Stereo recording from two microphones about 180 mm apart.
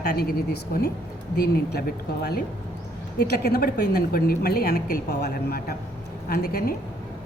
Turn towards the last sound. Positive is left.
turn(degrees=55)  # may be behind; listen again after turning